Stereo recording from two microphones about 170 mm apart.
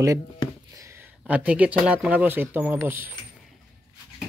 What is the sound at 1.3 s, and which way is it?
Speech, 10° right (ahead or behind).